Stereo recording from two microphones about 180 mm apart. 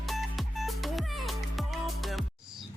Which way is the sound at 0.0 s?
Centre (ahead or behind).